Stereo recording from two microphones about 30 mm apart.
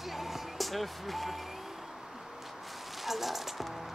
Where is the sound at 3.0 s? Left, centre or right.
Centre.